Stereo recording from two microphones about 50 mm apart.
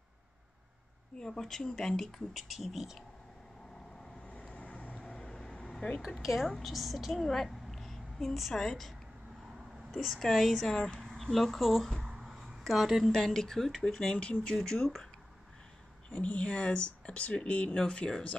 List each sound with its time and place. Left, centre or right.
1.1 s speech: centre
2.3 s a woman's voice: centre
4.3 s vehicle: left
5.0 s vehicle: centre
5.8 s a woman's voice: centre
6.0 s a woman's voice: centre
11.1 s speech: centre
12.1 s a sound: centre
13.1 s speech: centre
14.1 s speech: left
14.4 s speech: centre
16.1 s speech: left